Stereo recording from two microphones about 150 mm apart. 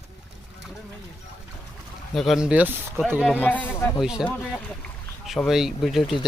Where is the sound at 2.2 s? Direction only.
Centre (ahead or behind).